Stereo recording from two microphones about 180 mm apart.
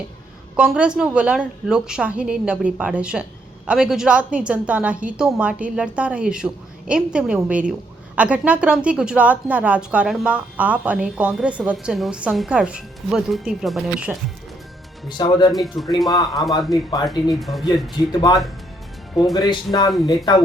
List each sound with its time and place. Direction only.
0.5 s a woman's voice: 5° right (ahead or behind)
15.2 s speech: 25° left (ahead or behind)
15.5 s a woman's voice: centre (ahead or behind)
16.0 s speech: 20° left (ahead or behind)
17.4 s a woman's voice: centre (ahead or behind)
18.1 s speech: 25° left (ahead or behind)